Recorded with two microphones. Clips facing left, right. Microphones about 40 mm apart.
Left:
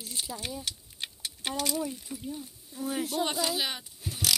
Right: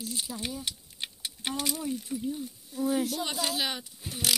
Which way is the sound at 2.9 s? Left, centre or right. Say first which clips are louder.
Even; left.